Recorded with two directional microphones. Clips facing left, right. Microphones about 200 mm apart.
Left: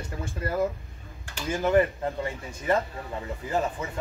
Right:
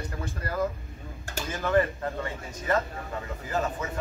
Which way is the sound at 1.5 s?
15° left (ahead or behind).